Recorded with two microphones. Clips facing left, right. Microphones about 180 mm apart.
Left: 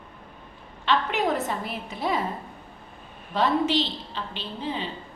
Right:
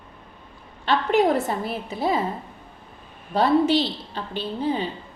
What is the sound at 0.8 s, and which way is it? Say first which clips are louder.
Speech: right 5 dB; 35° right (ahead or behind).